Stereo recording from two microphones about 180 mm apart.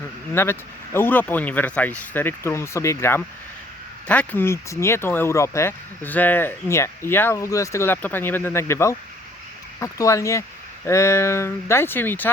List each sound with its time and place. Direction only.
0.4 s speech: 15° left (ahead or behind)